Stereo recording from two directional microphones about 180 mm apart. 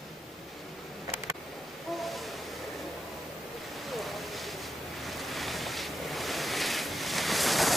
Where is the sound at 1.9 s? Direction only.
Centre (ahead or behind).